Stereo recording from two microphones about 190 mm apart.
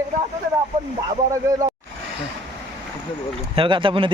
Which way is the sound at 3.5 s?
25° right (ahead or behind).